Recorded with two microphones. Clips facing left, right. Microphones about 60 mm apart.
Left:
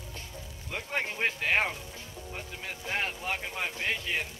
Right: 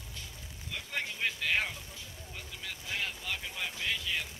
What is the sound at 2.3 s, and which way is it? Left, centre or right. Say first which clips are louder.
Speech: left 3 dB; left.